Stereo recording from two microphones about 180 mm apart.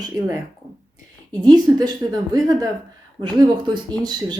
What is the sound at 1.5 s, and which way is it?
Speech, 20° right (ahead or behind).